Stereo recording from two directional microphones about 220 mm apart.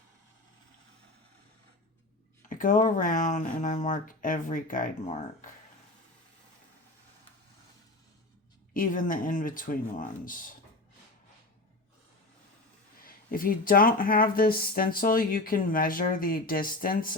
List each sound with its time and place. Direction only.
2.5 s speech: 35° left (ahead or behind)
8.7 s speech: 35° left (ahead or behind)
13.1 s speech: 40° left (ahead or behind)